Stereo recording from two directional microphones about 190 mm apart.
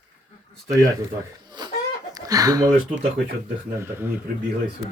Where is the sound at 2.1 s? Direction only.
20° right (ahead or behind).